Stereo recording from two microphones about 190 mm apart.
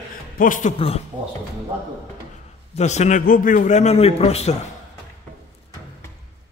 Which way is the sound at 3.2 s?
50° left (ahead or behind).